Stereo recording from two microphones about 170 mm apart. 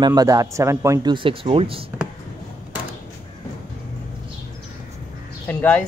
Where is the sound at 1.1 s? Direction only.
30° right (ahead or behind).